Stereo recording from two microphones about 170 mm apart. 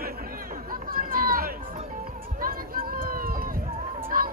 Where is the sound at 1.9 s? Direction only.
55° right (ahead or behind).